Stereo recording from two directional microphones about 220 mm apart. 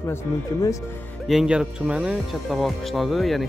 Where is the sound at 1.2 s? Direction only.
Centre (ahead or behind).